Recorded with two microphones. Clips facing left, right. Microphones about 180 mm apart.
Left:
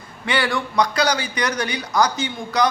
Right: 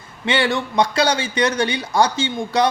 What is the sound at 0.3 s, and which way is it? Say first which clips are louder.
A man's voice: right 3 dB; 25° right (ahead or behind).